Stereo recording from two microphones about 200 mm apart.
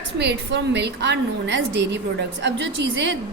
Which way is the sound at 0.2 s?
60° right (ahead or behind).